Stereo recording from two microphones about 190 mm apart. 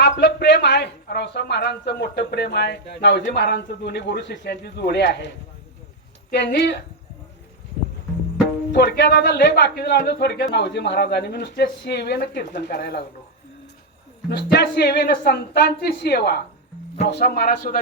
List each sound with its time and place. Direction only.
0.0 s a man's voice: 60° left (ahead or behind)
6.3 s a man's voice: 65° left (ahead or behind)
8.7 s a man's voice: 65° left (ahead or behind)
14.3 s a man's voice: 60° left (ahead or behind)